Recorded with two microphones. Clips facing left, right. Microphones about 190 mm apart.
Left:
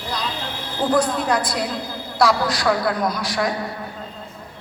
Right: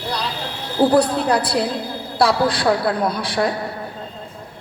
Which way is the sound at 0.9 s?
35° right (ahead or behind).